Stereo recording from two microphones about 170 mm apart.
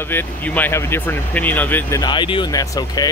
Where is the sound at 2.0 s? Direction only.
25° left (ahead or behind).